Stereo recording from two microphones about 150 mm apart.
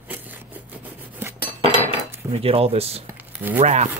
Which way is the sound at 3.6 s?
50° right (ahead or behind).